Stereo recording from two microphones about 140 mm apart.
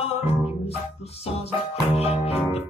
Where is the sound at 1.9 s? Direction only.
45° left (ahead or behind).